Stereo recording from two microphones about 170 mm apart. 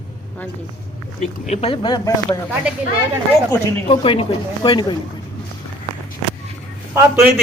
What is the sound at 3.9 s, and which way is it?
Speech, 35° left (ahead or behind).